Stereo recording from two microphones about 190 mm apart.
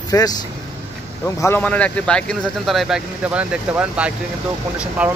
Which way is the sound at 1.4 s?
10° left (ahead or behind).